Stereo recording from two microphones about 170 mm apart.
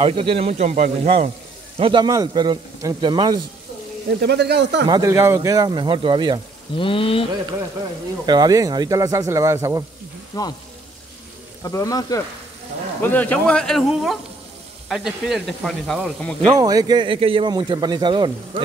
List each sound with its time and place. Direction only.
0.0 s a man's voice: 30° right (ahead or behind)
1.8 s a man's voice: 30° right (ahead or behind)
4.2 s speech: 75° right (ahead or behind)
4.8 s a man's voice: 20° right (ahead or behind)
6.8 s speech: 30° left (ahead or behind)
8.3 s a man's voice: 20° right (ahead or behind)
10.3 s speech: 25° left (ahead or behind)
11.6 s speech: 20° left (ahead or behind)
13.0 s speech: 10° left (ahead or behind)
16.4 s a man's voice: 20° right (ahead or behind)